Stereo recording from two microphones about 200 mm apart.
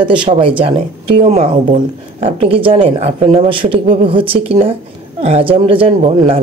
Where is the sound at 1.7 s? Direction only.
30° right (ahead or behind).